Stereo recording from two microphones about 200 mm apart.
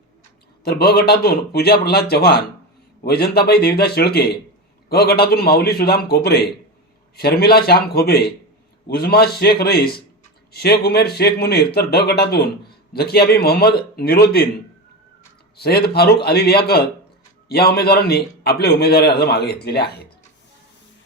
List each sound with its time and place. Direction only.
0.6 s a man's voice: 50° left (ahead or behind)
15.5 s a man's voice: 50° left (ahead or behind)